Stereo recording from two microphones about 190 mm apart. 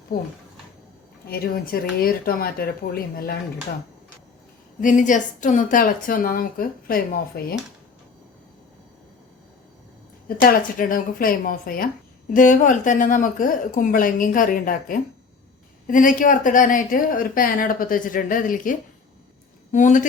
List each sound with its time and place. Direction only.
0.1 s speech: 50° left (ahead or behind)
1.3 s speech: 50° left (ahead or behind)
4.8 s speech: 45° left (ahead or behind)
10.2 s speech: 50° left (ahead or behind)